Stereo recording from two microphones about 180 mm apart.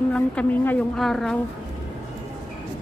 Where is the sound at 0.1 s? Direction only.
5° left (ahead or behind).